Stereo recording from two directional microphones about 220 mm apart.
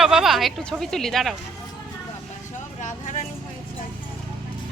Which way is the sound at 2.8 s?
35° left (ahead or behind).